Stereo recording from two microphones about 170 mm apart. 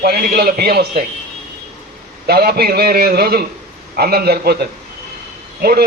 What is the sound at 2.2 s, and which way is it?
A man's voice, 70° right (ahead or behind).